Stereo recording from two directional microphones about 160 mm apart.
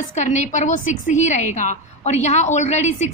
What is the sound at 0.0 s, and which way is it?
A woman's voice, 50° left (ahead or behind).